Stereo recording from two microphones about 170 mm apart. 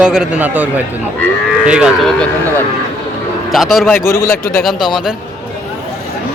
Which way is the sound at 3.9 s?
15° left (ahead or behind).